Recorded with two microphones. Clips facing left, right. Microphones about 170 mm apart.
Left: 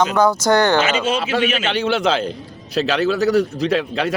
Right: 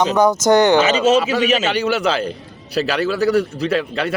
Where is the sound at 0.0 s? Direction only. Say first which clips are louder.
Right 1 dB; 20° right (ahead or behind).